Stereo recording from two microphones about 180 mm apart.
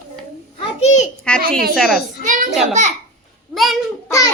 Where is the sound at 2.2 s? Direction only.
45° right (ahead or behind).